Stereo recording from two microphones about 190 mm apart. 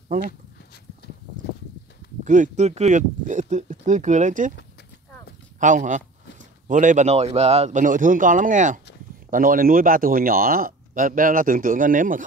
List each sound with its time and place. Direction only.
2.2 s speech: 40° right (ahead or behind)
5.6 s speech: 40° right (ahead or behind)